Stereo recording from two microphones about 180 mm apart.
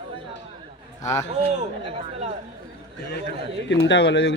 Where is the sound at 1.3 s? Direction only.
35° right (ahead or behind).